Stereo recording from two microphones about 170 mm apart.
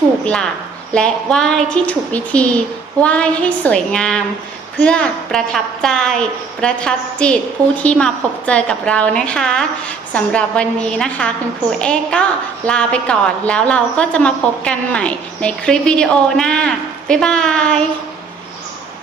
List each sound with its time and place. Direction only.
0.3 s a woman's voice: 5° left (ahead or behind)